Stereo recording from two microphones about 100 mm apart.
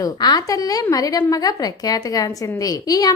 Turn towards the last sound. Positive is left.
turn(degrees=40)  # may be behind; listen again after turning